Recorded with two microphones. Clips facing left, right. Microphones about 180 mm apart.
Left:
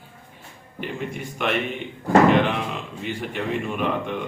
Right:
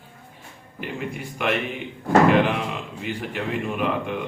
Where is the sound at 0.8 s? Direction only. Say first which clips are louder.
Left 1 dB; 5° right (ahead or behind).